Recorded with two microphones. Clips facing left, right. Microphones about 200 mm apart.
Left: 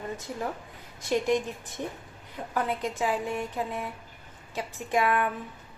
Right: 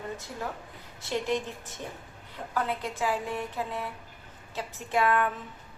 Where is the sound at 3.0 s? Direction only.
15° left (ahead or behind).